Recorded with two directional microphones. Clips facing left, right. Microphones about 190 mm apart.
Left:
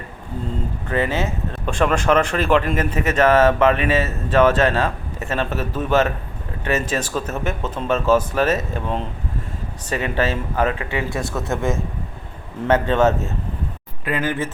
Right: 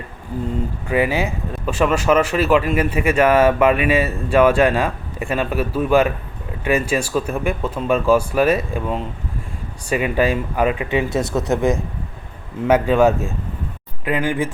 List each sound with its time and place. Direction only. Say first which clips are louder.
0.9 s speech: right 3 dB; 10° right (ahead or behind)